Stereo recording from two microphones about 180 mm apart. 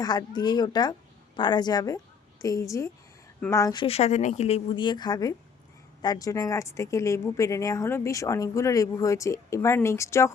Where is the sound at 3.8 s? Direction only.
35° left (ahead or behind).